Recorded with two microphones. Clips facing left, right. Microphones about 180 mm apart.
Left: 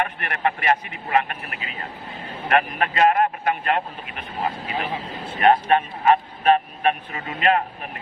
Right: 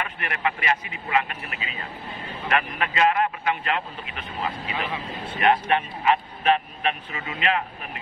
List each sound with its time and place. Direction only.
0.0 s speech: 50° left (ahead or behind)